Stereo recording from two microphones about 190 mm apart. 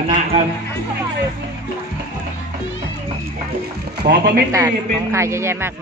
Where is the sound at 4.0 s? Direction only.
60° right (ahead or behind).